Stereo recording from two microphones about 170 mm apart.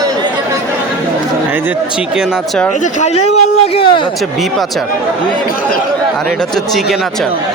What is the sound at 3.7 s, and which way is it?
Speech, 30° left (ahead or behind).